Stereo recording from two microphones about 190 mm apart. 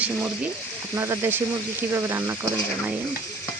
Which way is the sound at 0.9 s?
15° right (ahead or behind).